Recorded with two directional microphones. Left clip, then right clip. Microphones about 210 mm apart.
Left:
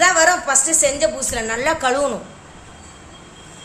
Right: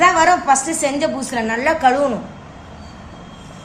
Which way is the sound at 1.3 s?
20° left (ahead or behind).